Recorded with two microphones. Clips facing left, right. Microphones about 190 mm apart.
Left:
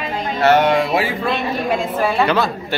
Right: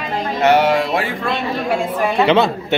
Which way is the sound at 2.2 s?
25° right (ahead or behind).